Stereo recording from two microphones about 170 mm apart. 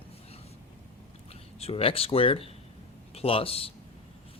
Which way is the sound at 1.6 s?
35° left (ahead or behind).